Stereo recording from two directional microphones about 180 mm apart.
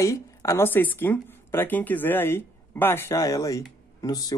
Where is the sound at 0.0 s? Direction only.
15° left (ahead or behind).